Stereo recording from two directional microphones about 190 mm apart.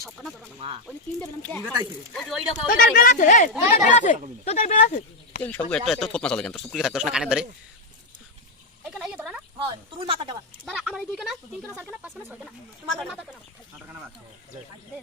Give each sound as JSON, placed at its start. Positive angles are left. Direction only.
{"t": 0.0, "sound": "speech", "side_deg": 0}
{"t": 2.1, "sound": "speech", "side_deg": 0}
{"t": 2.7, "sound": "speech", "side_deg": 45}
{"t": 5.4, "sound": "speech", "side_deg": 10}
{"t": 8.9, "sound": "a sound", "side_deg": -5}
{"t": 9.6, "sound": "speech", "side_deg": -25}
{"t": 10.7, "sound": "speech", "side_deg": 0}